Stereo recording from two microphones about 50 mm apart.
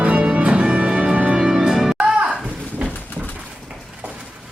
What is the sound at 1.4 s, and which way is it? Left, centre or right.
Music, centre.